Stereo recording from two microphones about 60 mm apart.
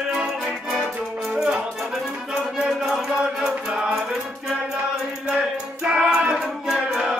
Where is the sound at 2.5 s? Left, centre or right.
Centre.